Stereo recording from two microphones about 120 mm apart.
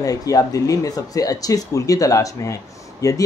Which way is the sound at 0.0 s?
30° left (ahead or behind).